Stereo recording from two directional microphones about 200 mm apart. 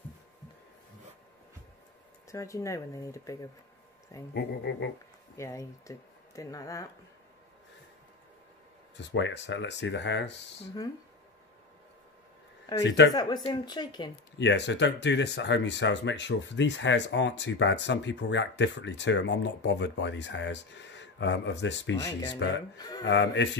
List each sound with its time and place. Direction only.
2.3 s speech: 15° left (ahead or behind)
4.3 s speech: 60° left (ahead or behind)
5.4 s speech: 15° left (ahead or behind)
8.9 s speech: 60° left (ahead or behind)
12.8 s speech: 60° left (ahead or behind)
13.1 s a woman's voice: 20° left (ahead or behind)
14.4 s speech: 60° left (ahead or behind)
21.9 s speech: 15° left (ahead or behind)
23.0 s speech: 65° left (ahead or behind)